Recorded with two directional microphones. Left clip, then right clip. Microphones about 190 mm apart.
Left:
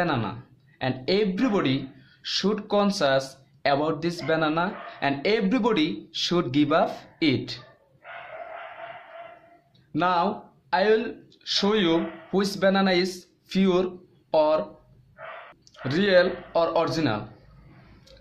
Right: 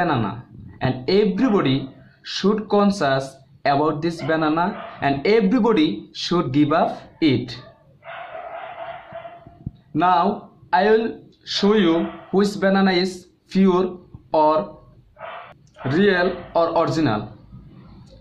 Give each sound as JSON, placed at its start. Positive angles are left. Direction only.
{"t": 0.0, "sound": "speech", "side_deg": 60}
{"t": 9.9, "sound": "speech", "side_deg": 60}
{"t": 15.9, "sound": "speech", "side_deg": 50}